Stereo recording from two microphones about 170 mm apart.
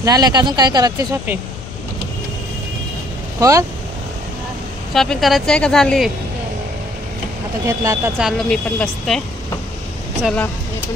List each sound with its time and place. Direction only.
0.0 s speech: 20° right (ahead or behind)
3.3 s speech: 20° right (ahead or behind)
4.9 s speech: centre (ahead or behind)
7.6 s speech: 15° right (ahead or behind)
8.2 s speech: centre (ahead or behind)